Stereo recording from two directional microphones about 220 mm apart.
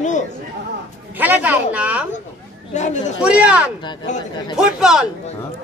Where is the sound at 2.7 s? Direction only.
35° left (ahead or behind).